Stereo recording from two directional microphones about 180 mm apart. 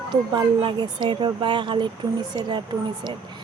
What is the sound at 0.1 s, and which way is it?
Speech, 25° right (ahead or behind).